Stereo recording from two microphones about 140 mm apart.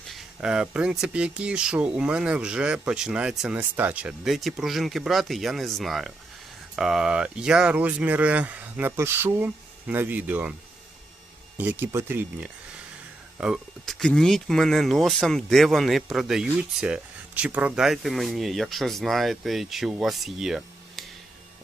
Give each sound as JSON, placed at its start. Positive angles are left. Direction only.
{"t": 0.1, "sound": "speech", "side_deg": -5}
{"t": 11.5, "sound": "speech", "side_deg": -10}